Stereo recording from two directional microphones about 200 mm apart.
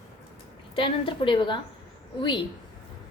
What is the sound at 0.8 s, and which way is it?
Speech, 25° left (ahead or behind).